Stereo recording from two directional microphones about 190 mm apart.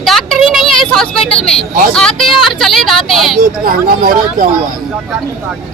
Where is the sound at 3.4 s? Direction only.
50° right (ahead or behind).